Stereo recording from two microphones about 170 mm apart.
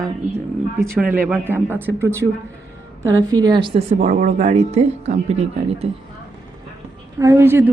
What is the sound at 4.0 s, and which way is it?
Speech, 50° right (ahead or behind).